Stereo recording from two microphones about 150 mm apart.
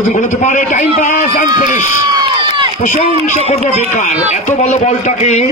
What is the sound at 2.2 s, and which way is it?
Run, 35° right (ahead or behind).